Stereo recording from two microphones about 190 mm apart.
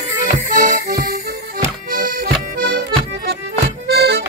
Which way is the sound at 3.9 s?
55° right (ahead or behind).